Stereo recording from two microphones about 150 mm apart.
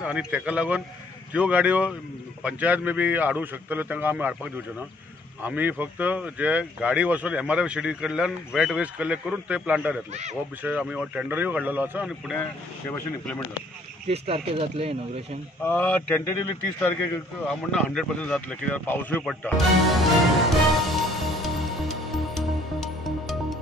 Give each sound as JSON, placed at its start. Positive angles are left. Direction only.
{"t": 0.0, "sound": "speech", "side_deg": -10}
{"t": 5.4, "sound": "speech", "side_deg": -10}
{"t": 14.0, "sound": "speech", "side_deg": -40}
{"t": 15.6, "sound": "speech", "side_deg": 15}
{"t": 17.5, "sound": "speech", "side_deg": 5}
{"t": 20.4, "sound": "music", "side_deg": 0}